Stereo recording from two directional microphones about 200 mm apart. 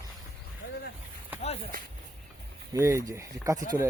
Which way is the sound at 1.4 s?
30° left (ahead or behind).